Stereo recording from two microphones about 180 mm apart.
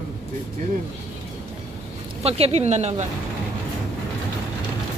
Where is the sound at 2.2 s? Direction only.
35° right (ahead or behind).